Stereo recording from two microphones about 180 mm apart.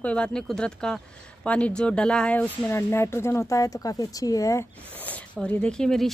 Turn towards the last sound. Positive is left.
turn(degrees=5)  # may be behind; listen again after turning